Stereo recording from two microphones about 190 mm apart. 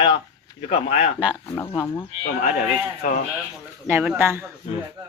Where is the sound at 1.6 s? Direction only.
10° left (ahead or behind).